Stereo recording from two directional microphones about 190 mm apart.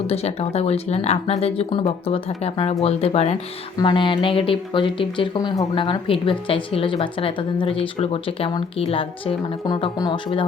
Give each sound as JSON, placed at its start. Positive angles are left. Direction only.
{"t": 0.1, "sound": "speech", "side_deg": 35}